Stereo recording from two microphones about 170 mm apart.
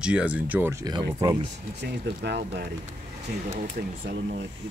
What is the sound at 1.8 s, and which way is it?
Speech, 80° right.